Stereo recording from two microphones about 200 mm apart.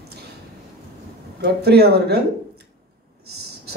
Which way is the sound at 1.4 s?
55° right (ahead or behind).